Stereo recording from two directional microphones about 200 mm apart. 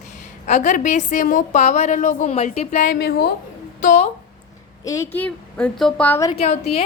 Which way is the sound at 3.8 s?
35° left (ahead or behind).